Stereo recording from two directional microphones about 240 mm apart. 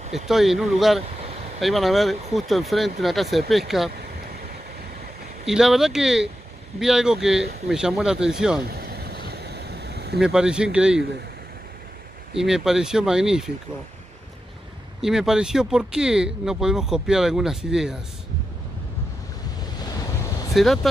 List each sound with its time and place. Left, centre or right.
0.1 s speech: centre
5.5 s speech: centre
8.6 s a sound: right
10.2 s speech: centre
12.4 s speech: centre
15.0 s speech: centre
20.2 s a sound: centre
20.5 s speech: centre